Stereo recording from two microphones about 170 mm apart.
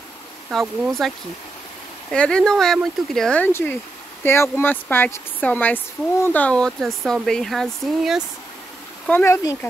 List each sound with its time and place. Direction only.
0.5 s speech: centre (ahead or behind)
9.0 s speech: 15° left (ahead or behind)